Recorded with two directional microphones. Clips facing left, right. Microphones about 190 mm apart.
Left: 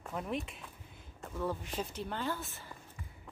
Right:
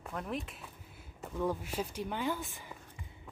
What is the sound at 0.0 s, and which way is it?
Speech, centre (ahead or behind).